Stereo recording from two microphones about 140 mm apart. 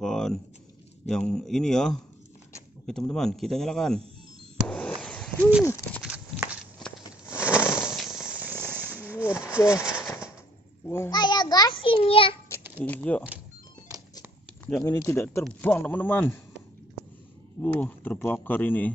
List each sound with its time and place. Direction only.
0.0 s a man's voice: 5° left (ahead or behind)
4.6 s a sound: 5° left (ahead or behind)
6.0 s horse: 10° right (ahead or behind)
7.2 s a sound: 10° right (ahead or behind)
11.1 s a child's voice: 30° left (ahead or behind)
12.8 s speech: 10° left (ahead or behind)
14.9 s speech: 15° left (ahead or behind)
17.6 s speech: 10° left (ahead or behind)